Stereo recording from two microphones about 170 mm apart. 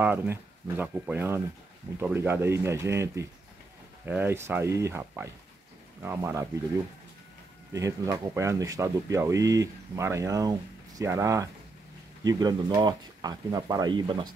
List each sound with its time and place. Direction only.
0.0 s speech: 10° right (ahead or behind)
7.7 s speech: 20° right (ahead or behind)